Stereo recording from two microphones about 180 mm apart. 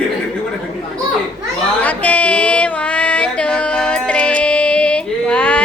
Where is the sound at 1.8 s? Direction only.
10° left (ahead or behind).